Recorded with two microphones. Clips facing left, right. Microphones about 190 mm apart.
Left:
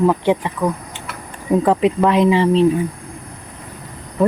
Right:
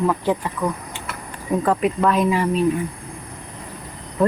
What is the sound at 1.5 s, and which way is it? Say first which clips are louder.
Speech: left 5 dB; 20° left (ahead or behind).